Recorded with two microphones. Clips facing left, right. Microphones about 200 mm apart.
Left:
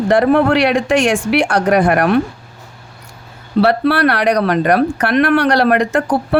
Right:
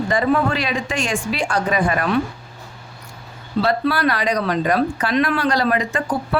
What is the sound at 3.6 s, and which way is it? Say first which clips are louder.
A woman's voice: left 6 dB; 70° left (ahead or behind).